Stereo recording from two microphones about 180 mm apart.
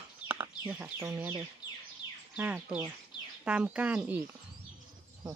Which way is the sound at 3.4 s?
5° right (ahead or behind).